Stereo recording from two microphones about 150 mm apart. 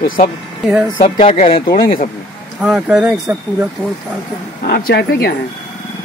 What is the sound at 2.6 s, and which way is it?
Speech, 10° right (ahead or behind).